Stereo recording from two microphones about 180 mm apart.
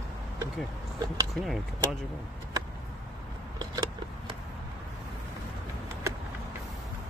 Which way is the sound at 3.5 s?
20° right (ahead or behind).